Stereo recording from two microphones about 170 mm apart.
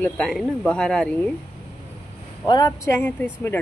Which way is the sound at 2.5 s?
20° left (ahead or behind).